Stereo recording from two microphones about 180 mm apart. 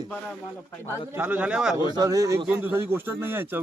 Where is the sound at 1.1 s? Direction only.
10° right (ahead or behind).